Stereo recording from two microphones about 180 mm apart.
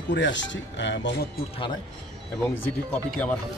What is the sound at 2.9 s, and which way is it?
Speech, 5° left (ahead or behind).